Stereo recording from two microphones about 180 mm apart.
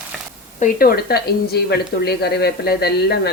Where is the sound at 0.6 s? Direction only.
55° left (ahead or behind).